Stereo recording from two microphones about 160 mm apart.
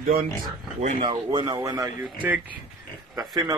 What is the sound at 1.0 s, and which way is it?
Speech, 30° right (ahead or behind).